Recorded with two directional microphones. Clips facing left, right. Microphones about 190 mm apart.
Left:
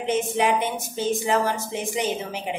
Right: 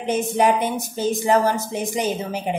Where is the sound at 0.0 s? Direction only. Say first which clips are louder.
Right 3 dB; 40° right (ahead or behind).